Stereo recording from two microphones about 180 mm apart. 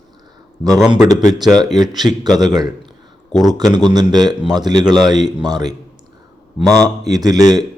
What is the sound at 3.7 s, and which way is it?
A man's voice, 20° right (ahead or behind).